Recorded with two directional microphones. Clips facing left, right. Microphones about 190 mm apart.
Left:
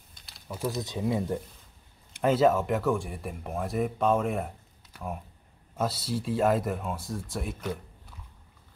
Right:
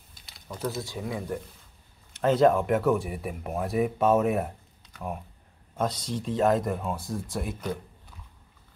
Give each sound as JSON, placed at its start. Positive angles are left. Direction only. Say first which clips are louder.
{"t": 0.1, "sound": "a sound", "louder": "left 1 dB", "side_deg": 0}
{"t": 0.7, "sound": "speech", "louder": "left 4 dB", "side_deg": 20}
{"t": 2.2, "sound": "speech", "louder": "right 2 dB", "side_deg": 5}